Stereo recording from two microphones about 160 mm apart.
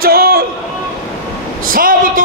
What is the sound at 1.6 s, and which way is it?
Speech, 60° right (ahead or behind).